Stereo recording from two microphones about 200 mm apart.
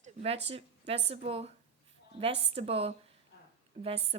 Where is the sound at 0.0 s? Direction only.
30° right (ahead or behind).